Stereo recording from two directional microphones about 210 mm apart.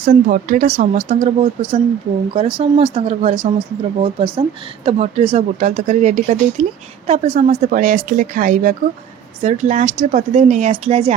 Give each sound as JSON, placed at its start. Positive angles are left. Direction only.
{"t": 0.0, "sound": "speech", "side_deg": -40}